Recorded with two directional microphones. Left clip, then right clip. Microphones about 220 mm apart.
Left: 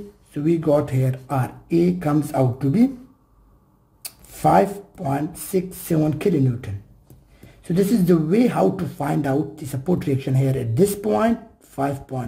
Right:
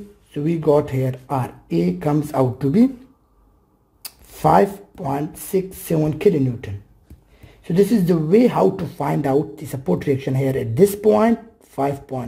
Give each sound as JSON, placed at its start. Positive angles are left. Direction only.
{"t": 0.3, "sound": "speech", "side_deg": -15}
{"t": 4.0, "sound": "a sound", "side_deg": -20}
{"t": 5.5, "sound": "speech", "side_deg": -20}